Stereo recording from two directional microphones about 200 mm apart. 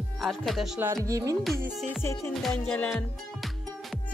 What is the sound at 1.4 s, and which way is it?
Speech, centre (ahead or behind).